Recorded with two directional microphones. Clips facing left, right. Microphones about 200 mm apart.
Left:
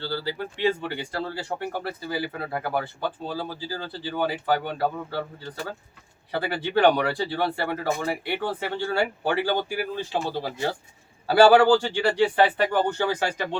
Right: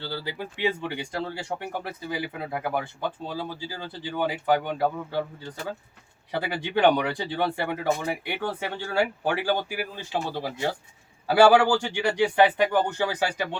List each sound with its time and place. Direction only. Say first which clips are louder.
0.0 s speech: left 3 dB; 15° right (ahead or behind)
6.3 s speech: left 2 dB; 15° right (ahead or behind)
11.3 s speech: left 2 dB; 10° right (ahead or behind)